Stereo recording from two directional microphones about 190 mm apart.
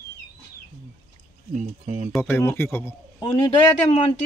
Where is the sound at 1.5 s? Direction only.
45° right (ahead or behind).